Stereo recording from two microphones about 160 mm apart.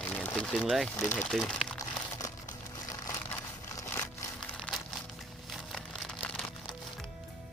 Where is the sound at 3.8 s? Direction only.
15° left (ahead or behind).